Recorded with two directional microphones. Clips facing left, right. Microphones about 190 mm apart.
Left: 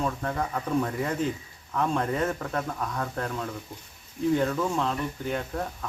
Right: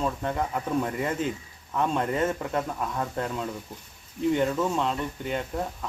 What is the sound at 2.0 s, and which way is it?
Speech, 20° right (ahead or behind).